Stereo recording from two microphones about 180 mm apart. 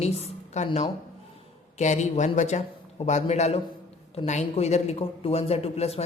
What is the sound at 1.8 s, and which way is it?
A woman's voice, 40° left (ahead or behind).